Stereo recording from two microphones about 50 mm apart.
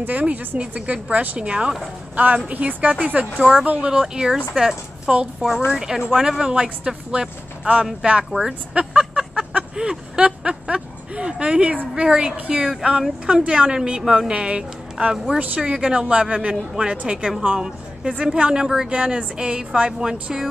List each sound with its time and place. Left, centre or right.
0.0 s a woman's voice: right
3.9 s speech: centre
8.7 s a sound: right
11.9 s a woman's voice: centre
18.9 s a woman's voice: right